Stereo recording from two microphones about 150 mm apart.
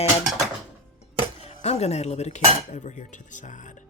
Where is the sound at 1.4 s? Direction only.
45° left (ahead or behind).